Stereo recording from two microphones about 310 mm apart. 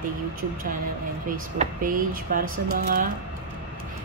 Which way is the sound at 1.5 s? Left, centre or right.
Right.